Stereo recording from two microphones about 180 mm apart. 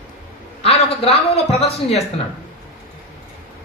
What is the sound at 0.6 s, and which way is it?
A woman's voice, 35° left (ahead or behind).